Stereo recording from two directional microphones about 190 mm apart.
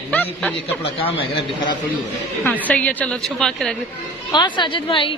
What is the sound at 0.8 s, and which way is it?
Speech, 30° left (ahead or behind).